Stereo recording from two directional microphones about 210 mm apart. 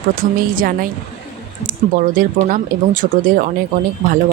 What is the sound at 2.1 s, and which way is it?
Speech, 40° right (ahead or behind).